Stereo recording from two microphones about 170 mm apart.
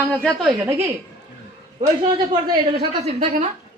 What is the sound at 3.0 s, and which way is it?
Speech, 45° right (ahead or behind).